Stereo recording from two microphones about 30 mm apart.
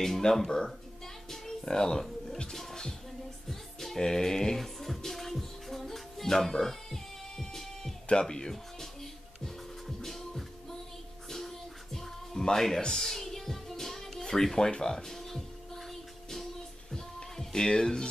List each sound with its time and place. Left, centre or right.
0.2 s a sound: left
1.3 s music: centre
1.7 s a sound: left
2.5 s music: centre
4.0 s a sound: left
4.6 s music: centre
8.1 s speech: left
9.8 s music: centre
12.4 s speech: centre
12.9 s music: centre
14.2 s speech: centre
14.7 s a sound: left
15.0 s music: centre
16.9 s music: centre